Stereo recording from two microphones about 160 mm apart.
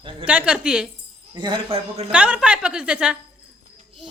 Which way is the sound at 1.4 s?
30° right (ahead or behind).